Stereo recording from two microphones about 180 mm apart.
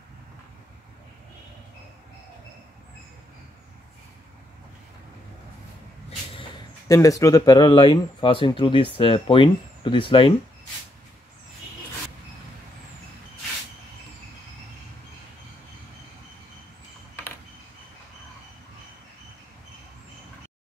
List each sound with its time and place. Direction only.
6.9 s speech: 20° left (ahead or behind)